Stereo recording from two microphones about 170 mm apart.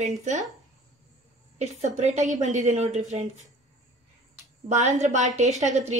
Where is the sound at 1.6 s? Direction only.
40° right (ahead or behind).